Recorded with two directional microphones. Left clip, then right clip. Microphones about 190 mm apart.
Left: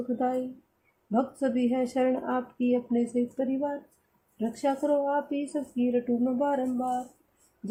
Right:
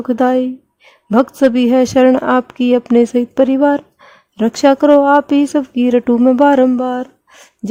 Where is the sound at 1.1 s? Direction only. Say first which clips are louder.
Right 16 dB; 60° right (ahead or behind).